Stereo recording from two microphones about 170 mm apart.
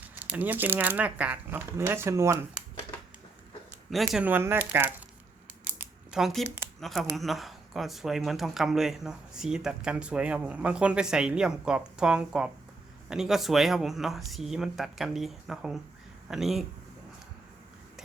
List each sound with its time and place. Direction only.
0.0 s speech: 10° right (ahead or behind)
3.8 s speech: centre (ahead or behind)
5.6 s a sound: 5° right (ahead or behind)
6.7 s speech: centre (ahead or behind)